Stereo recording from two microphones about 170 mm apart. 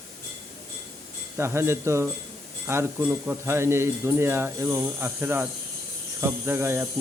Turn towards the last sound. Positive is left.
turn(degrees=-15)  # may be behind; listen again after turning